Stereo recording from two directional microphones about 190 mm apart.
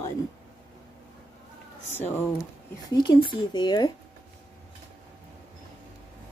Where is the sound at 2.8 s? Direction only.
25° left (ahead or behind).